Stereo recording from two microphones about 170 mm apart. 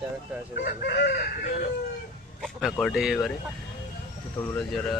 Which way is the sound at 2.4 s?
5° right (ahead or behind).